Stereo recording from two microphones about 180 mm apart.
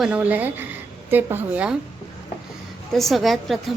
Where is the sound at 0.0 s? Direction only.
5° right (ahead or behind).